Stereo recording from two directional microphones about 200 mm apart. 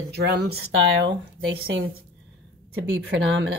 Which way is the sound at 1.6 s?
50° right (ahead or behind).